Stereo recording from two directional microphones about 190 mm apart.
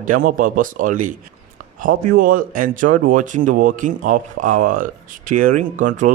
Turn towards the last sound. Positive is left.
turn(degrees=-45)  # may be behind; listen again after turning